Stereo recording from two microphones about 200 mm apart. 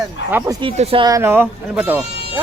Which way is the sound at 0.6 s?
25° right (ahead or behind).